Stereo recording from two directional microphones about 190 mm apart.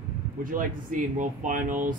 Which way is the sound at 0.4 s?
45° right (ahead or behind).